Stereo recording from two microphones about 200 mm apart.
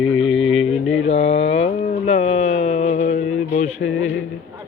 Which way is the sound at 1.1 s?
30° left (ahead or behind).